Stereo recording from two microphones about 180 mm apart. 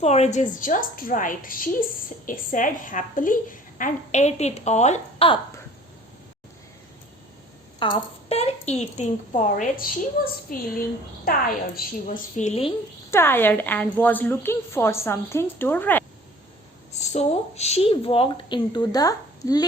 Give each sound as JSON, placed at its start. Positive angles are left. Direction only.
{"t": 0.0, "sound": "a woman's voice", "side_deg": 35}
{"t": 7.8, "sound": "a woman's voice", "side_deg": 25}
{"t": 13.1, "sound": "a woman's voice", "side_deg": 15}
{"t": 16.9, "sound": "a woman's voice", "side_deg": 40}